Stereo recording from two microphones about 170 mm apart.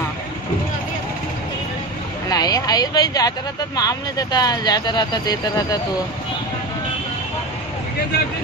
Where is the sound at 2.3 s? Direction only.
20° left (ahead or behind).